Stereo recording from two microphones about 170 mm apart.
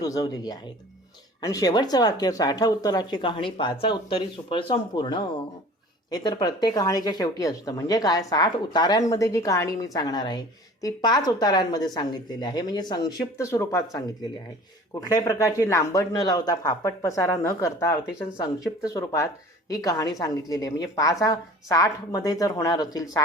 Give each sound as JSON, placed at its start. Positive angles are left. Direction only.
{"t": 0.0, "sound": "a woman's voice", "side_deg": 20}